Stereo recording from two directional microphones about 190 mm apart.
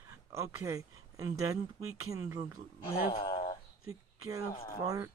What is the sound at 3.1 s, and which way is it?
Speech, 30° left (ahead or behind).